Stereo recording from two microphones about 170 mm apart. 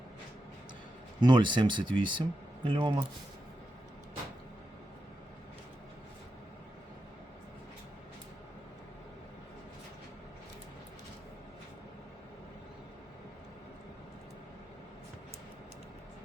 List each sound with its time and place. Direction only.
1.2 s speech: 25° right (ahead or behind)